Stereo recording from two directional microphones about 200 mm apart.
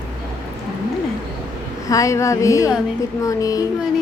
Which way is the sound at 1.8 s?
15° left (ahead or behind).